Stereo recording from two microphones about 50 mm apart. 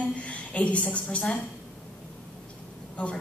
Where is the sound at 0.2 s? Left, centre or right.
Left.